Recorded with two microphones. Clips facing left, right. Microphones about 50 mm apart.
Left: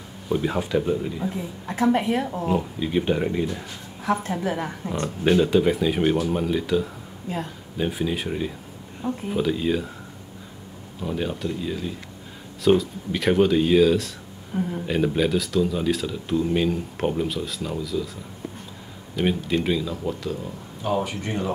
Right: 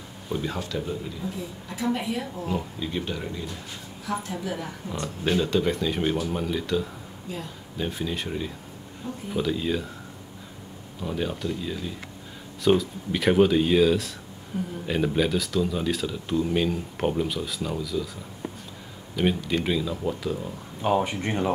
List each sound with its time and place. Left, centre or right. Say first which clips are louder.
0.3 s speech: left 7 dB; centre
1.3 s a woman's voice: left 4 dB; left
2.4 s a woman's voice: left 5 dB; left
5.2 s speech: left 5 dB; centre
7.3 s a woman's voice: left 6 dB; left
7.7 s speech: left 4 dB; centre
11.0 s speech: left 2 dB; centre
14.5 s a woman's voice: left 4 dB; left
14.9 s speech: left 1 dB; centre
19.1 s speech: left 2 dB; centre
21.0 s speech: right 1 dB; right